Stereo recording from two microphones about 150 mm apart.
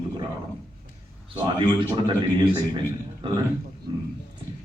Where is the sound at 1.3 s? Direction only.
35° right (ahead or behind).